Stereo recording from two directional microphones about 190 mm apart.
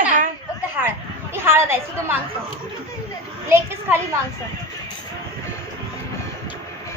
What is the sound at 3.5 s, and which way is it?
Speech, 15° right (ahead or behind).